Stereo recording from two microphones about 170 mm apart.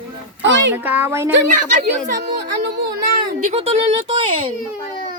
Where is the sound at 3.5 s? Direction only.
35° right (ahead or behind).